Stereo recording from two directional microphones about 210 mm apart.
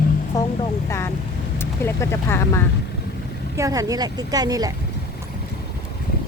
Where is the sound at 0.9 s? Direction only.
15° left (ahead or behind).